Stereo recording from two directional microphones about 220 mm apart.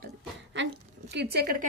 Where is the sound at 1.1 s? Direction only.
50° right (ahead or behind).